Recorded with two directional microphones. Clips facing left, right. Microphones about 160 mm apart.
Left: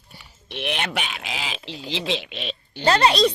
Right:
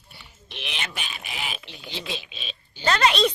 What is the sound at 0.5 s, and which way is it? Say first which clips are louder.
Speech: left 9 dB; 60° left (ahead or behind).